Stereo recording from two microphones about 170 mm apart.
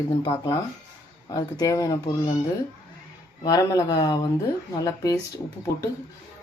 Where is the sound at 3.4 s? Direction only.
20° left (ahead or behind).